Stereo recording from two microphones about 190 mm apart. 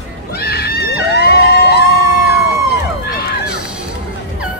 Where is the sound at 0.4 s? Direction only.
55° left (ahead or behind).